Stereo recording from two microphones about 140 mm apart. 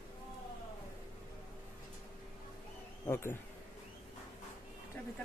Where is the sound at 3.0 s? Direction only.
20° left (ahead or behind).